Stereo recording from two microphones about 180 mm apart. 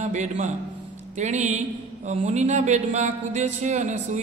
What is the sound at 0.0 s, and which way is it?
A man's voice, 40° right (ahead or behind).